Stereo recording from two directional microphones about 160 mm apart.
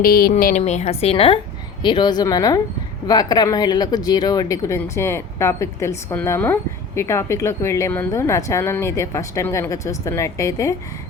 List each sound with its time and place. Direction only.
0.0 s speech: 65° left (ahead or behind)
0.6 s a woman's voice: 45° left (ahead or behind); by 10.8 s 20° left (ahead or behind)